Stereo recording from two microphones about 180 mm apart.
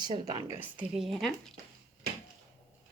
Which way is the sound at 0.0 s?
20° right (ahead or behind).